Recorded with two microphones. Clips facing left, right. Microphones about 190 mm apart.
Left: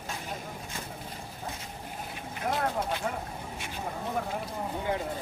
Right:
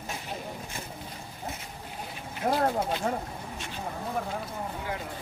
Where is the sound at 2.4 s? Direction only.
45° right (ahead or behind).